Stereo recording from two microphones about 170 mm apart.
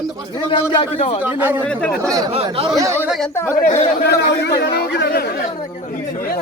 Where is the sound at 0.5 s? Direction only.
30° left (ahead or behind).